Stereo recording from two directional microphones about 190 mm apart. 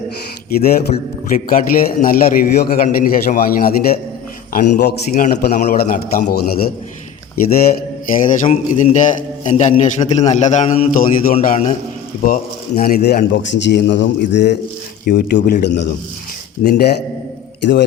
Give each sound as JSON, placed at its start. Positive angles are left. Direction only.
{"t": 1.3, "sound": "a man's voice", "side_deg": 50}
{"t": 8.1, "sound": "a man's voice", "side_deg": 45}